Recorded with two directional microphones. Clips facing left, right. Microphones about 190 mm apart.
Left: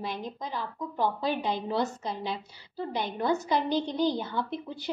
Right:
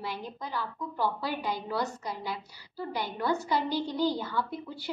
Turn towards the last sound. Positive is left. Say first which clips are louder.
# left 1 dB
turn(degrees=20)  # may be behind; listen again after turning